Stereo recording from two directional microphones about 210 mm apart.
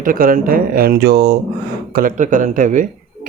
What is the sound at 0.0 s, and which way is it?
Speech, 40° right (ahead or behind).